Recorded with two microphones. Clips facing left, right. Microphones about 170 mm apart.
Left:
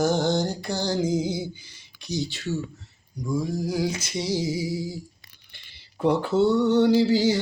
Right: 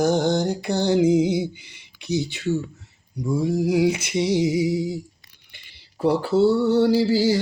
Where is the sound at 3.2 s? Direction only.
30° right (ahead or behind).